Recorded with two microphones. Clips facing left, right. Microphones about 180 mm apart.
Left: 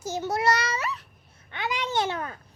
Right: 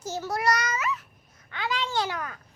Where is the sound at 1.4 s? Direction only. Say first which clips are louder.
Even; 20° left (ahead or behind).